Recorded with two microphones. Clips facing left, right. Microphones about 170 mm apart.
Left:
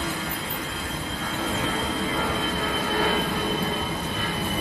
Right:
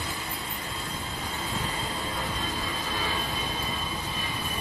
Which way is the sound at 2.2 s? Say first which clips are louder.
Left 6 dB; 80° left.